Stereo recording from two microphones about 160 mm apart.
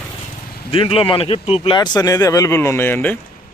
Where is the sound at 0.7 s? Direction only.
35° left (ahead or behind); by 3.1 s 15° left (ahead or behind).